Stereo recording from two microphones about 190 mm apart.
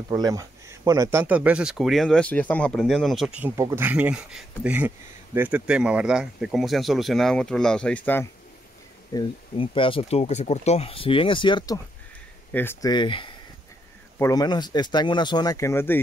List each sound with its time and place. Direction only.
0.1 s speech: 20° right (ahead or behind); by 8.3 s 10° left (ahead or behind)
9.1 s speech: 25° left (ahead or behind)
12.5 s speech: 10° left (ahead or behind)
12.9 s speech: 25° left (ahead or behind)